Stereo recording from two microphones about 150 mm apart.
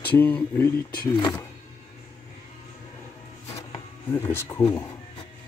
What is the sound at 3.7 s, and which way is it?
Speech, 15° left (ahead or behind).